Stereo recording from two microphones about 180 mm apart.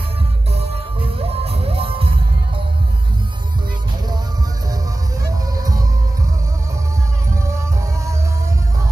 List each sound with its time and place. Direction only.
0.5 s music: 35° right (ahead or behind)
5.6 s music: 20° right (ahead or behind)
7.4 s music: 15° right (ahead or behind)